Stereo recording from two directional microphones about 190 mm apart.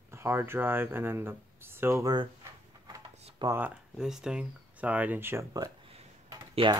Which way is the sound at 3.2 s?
30° right (ahead or behind).